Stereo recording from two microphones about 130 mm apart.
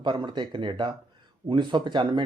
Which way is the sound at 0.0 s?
35° right (ahead or behind).